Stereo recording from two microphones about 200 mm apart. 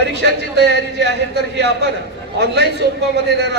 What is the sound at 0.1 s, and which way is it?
A man's voice, 55° right (ahead or behind).